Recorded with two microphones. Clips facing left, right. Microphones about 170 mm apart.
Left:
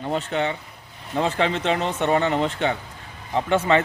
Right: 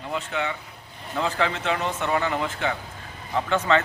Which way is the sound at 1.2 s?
20° left (ahead or behind).